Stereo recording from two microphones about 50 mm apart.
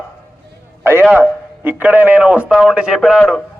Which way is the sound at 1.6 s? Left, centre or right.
Right.